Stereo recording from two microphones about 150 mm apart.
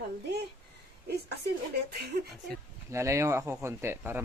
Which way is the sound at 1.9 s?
90° right.